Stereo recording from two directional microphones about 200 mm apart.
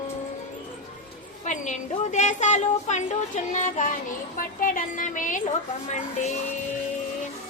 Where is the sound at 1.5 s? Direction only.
40° left (ahead or behind).